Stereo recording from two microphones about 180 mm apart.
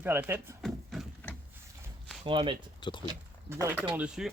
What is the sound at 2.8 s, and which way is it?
Speech, 25° left (ahead or behind).